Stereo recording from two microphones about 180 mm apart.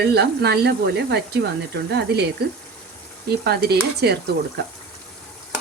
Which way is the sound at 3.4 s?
60° right (ahead or behind).